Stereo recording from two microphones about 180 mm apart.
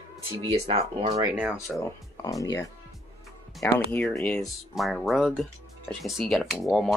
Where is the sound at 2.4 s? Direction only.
20° left (ahead or behind).